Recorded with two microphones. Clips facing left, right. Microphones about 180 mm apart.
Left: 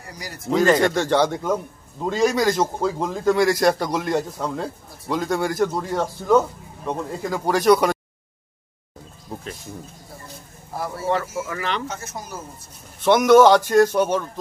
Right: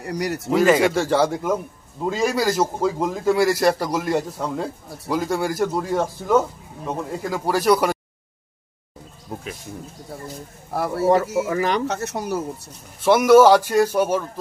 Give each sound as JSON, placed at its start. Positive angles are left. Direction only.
{"t": 0.0, "sound": "speech", "side_deg": -70}
{"t": 0.5, "sound": "a man's voice", "side_deg": -5}
{"t": 10.7, "sound": "speech", "side_deg": -65}
{"t": 11.4, "sound": "speech", "side_deg": -40}
{"t": 11.9, "sound": "speech", "side_deg": -70}
{"t": 13.0, "sound": "speech", "side_deg": -5}